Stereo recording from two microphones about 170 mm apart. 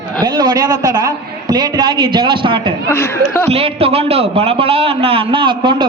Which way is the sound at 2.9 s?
15° left (ahead or behind).